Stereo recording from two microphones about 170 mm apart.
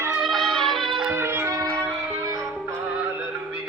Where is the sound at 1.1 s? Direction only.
15° right (ahead or behind).